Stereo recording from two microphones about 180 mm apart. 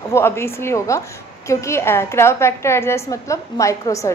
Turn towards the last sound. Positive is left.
turn(degrees=15)  # may be behind; listen again after turning